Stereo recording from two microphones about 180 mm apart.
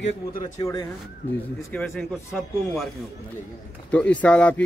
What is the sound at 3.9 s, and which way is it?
Speech, 5° left (ahead or behind).